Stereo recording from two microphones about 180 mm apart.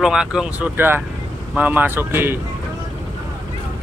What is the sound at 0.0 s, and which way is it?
Speech, 5° right (ahead or behind).